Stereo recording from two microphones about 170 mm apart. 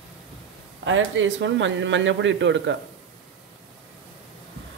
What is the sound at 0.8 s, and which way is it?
Speech, 90° right.